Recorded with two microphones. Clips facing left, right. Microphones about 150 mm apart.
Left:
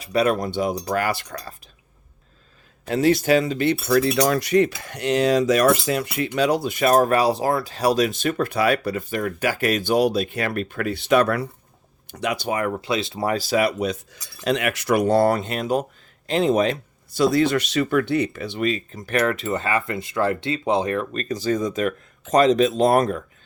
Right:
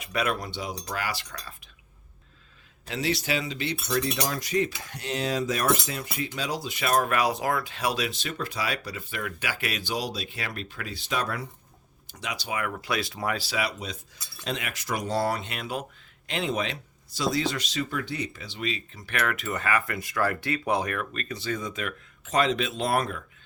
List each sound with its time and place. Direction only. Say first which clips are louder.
0.0 s speech: left 8 dB; 35° left (ahead or behind); by 1.4 s 55° left (ahead or behind)
2.8 s cutlery: left 10 dB; 50° left (ahead or behind)
12.5 s speech: left 7 dB; 40° left (ahead or behind)
12.8 s speech: left 6 dB; 25° left (ahead or behind); by 16.7 s 45° left (ahead or behind)
17.2 s speech: left 9 dB; 55° left (ahead or behind); by 23.2 s 40° left (ahead or behind)